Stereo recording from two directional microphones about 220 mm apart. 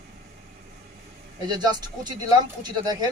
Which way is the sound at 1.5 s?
20° right (ahead or behind).